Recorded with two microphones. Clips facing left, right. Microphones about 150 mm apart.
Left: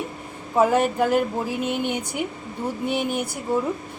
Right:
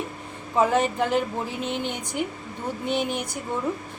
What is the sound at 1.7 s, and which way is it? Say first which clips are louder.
Speech: left 4 dB; 60° left (ahead or behind).